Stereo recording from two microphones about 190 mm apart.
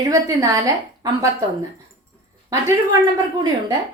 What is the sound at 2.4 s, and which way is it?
Speech, 20° right (ahead or behind).